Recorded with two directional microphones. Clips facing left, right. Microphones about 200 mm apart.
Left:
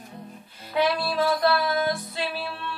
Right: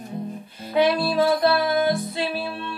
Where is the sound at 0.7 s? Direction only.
20° right (ahead or behind).